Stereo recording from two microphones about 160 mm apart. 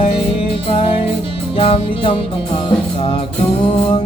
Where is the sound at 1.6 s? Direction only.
35° left (ahead or behind).